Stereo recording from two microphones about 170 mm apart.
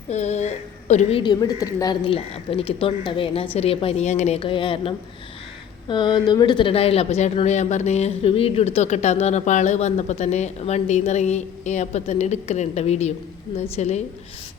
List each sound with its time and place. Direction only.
0.1 s speech: 40° left (ahead or behind)
1.2 s a woman's voice: 25° left (ahead or behind)
2.0 s speech: 35° left (ahead or behind)
4.4 s speech: 30° left (ahead or behind)